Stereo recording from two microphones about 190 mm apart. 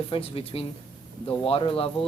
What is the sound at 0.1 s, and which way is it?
A man's voice, 30° left (ahead or behind).